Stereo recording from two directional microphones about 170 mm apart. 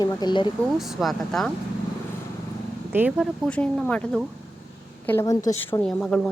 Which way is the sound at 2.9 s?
10° right (ahead or behind).